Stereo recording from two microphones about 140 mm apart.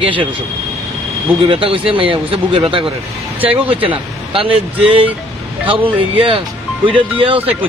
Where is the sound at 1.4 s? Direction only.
40° right (ahead or behind).